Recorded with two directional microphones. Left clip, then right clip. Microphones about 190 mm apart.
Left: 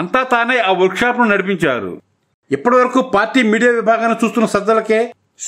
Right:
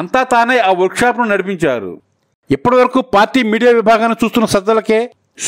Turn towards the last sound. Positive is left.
turn(degrees=-45)  # may be behind; listen again after turning